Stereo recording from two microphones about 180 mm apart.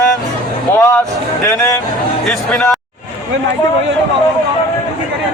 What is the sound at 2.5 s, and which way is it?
Speech, 5° left (ahead or behind).